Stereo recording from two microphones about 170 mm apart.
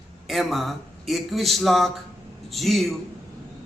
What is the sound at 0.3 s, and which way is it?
A man's voice, centre (ahead or behind).